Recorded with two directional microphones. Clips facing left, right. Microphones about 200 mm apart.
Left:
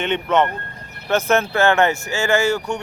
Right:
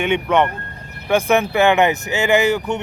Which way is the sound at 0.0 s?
10° right (ahead or behind).